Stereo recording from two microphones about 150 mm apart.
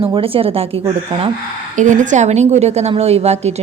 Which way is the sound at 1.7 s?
55° right (ahead or behind).